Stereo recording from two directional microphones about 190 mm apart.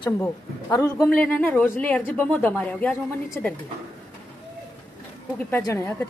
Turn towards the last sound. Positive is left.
turn(degrees=15)  # may be behind; listen again after turning